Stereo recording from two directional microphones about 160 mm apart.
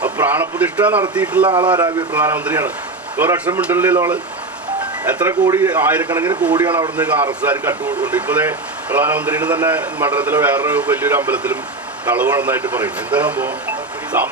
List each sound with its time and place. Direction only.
0.0 s a man's voice: 10° right (ahead or behind)
1.5 s speech: 30° right (ahead or behind)
2.1 s a man's voice: 10° right (ahead or behind)